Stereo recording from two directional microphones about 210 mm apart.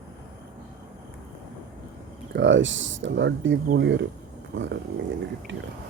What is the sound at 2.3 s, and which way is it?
Speech, 60° right (ahead or behind).